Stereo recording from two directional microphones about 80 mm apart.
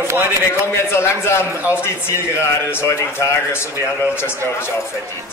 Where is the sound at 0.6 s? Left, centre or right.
Left.